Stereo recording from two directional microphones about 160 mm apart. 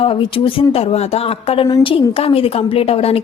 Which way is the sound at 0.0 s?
35° left (ahead or behind).